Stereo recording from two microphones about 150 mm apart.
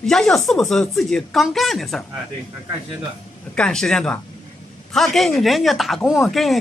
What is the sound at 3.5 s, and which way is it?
Speech, 5° left (ahead or behind).